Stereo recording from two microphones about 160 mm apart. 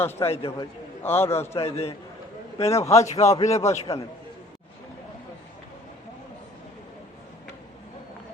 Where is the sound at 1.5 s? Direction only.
40° left (ahead or behind).